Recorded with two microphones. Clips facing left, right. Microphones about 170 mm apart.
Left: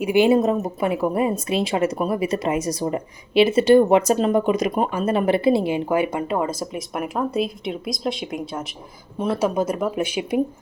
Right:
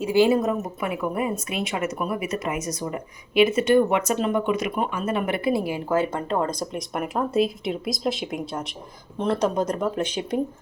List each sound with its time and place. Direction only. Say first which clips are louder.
0.0 s a woman's voice: left 3 dB; 20° left (ahead or behind)